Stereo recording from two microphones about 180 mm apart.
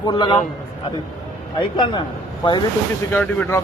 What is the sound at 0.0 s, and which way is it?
Speech, 25° left (ahead or behind).